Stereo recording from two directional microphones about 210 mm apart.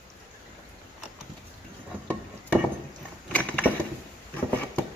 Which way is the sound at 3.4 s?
5° left (ahead or behind).